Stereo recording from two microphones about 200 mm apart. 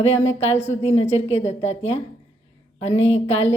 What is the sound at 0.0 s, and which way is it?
Speech, 35° left (ahead or behind).